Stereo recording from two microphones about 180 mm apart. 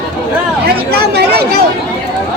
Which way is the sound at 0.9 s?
65° right (ahead or behind).